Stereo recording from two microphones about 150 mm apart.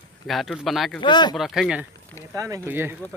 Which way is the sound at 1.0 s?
30° left (ahead or behind).